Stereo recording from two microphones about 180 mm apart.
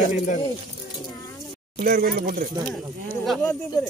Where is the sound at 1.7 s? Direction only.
55° right (ahead or behind).